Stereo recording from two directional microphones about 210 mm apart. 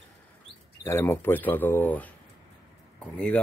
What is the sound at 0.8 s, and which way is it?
Speech, 10° left (ahead or behind).